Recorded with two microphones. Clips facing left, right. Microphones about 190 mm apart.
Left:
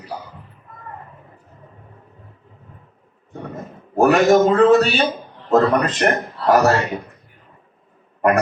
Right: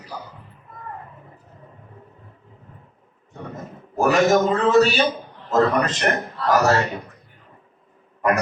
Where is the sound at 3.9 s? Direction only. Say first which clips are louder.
Left 4 dB; 55° left (ahead or behind).